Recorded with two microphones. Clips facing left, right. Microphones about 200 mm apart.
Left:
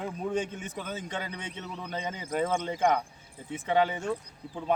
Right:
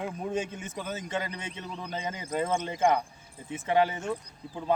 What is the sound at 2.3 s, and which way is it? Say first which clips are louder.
Speech: even; 15° left (ahead or behind).